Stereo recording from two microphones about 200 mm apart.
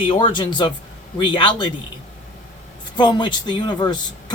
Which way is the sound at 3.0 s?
25° left (ahead or behind).